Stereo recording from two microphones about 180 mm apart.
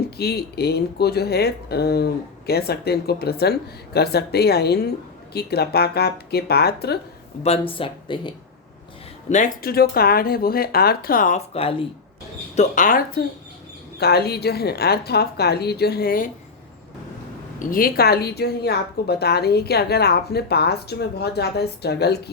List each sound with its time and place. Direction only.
0.2 s speech: 60° left (ahead or behind)
7.4 s speech: 30° left (ahead or behind)
9.3 s speech: 45° left (ahead or behind)
12.5 s speech: 45° left (ahead or behind)
17.7 s speech: 55° left (ahead or behind)